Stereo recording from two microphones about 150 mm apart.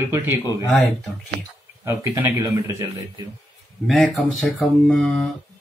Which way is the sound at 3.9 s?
Centre (ahead or behind).